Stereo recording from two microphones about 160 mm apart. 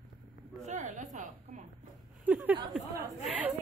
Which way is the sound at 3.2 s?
10° right (ahead or behind).